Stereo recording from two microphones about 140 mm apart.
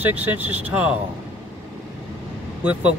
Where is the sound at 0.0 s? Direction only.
15° right (ahead or behind).